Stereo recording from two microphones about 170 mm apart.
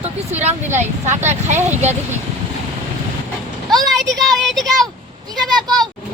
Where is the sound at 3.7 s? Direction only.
Centre (ahead or behind).